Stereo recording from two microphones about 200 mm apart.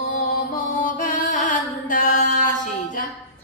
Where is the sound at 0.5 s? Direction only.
40° left (ahead or behind).